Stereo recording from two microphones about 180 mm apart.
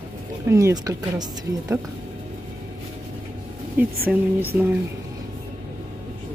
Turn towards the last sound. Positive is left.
turn(degrees=-10)  # may be behind; listen again after turning